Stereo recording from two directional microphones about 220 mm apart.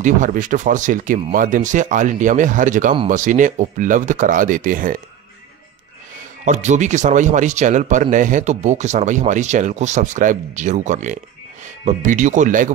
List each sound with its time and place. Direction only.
0.0 s speech: 35° right (ahead or behind)
6.4 s speech: 35° right (ahead or behind)